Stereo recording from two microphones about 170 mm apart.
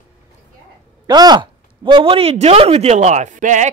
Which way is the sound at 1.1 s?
25° right (ahead or behind).